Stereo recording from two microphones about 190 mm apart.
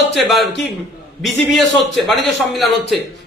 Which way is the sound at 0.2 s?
Centre (ahead or behind).